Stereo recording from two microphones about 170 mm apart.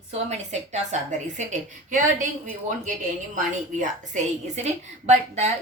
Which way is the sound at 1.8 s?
50° right (ahead or behind).